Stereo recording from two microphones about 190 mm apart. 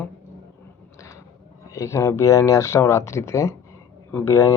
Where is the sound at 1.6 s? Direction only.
15° left (ahead or behind).